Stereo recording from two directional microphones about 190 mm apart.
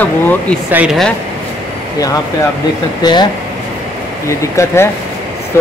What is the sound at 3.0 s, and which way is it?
Speech, 20° left (ahead or behind).